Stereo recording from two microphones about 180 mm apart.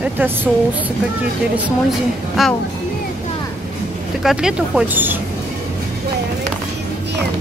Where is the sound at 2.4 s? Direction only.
Centre (ahead or behind).